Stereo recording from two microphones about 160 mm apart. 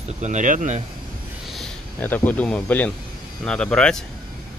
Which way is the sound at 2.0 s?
10° left (ahead or behind).